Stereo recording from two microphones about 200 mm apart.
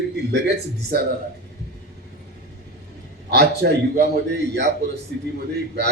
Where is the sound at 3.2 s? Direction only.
55° right (ahead or behind).